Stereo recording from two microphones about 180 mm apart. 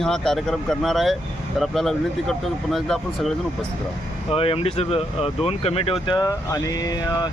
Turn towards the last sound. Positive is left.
turn(degrees=20)  # may be behind; listen again after turning